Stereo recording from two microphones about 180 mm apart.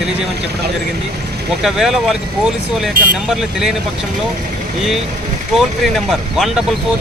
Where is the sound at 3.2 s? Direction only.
5° right (ahead or behind).